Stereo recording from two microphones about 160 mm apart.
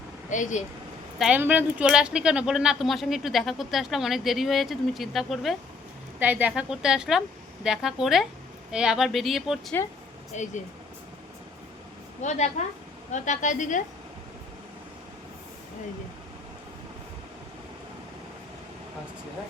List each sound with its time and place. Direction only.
0.3 s a woman's voice: 50° left (ahead or behind)
1.2 s speech: 10° right (ahead or behind)
10.3 s a woman's voice: 50° left (ahead or behind)
12.2 s a woman's voice: 45° left (ahead or behind)